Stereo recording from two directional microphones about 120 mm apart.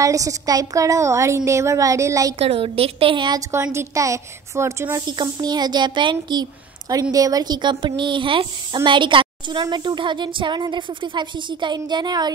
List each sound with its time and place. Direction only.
0.0 s a woman's voice: 30° right (ahead or behind)
2.3 s a woman's voice: 55° right (ahead or behind)
3.7 s a woman's voice: 25° right (ahead or behind)
5.0 s a woman's voice: 35° right (ahead or behind)